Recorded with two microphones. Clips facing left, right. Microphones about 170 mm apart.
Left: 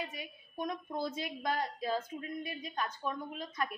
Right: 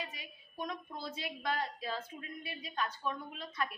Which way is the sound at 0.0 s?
50° left (ahead or behind).